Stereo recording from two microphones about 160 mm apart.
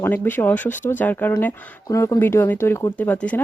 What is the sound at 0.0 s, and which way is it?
Speech, 10° left (ahead or behind).